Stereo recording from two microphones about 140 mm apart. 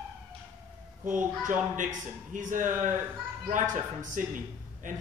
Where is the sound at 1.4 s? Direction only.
70° right (ahead or behind).